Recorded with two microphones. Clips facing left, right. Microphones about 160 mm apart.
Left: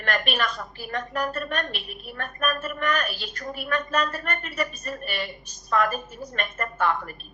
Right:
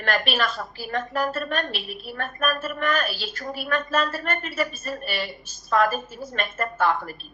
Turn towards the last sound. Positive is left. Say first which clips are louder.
# right 2 dB
turn(degrees=-35)  # may be behind; listen again after turning